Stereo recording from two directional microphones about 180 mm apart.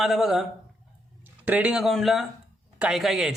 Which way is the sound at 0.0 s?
Centre (ahead or behind).